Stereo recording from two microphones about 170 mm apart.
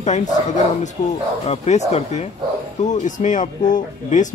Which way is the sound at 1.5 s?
40° left (ahead or behind).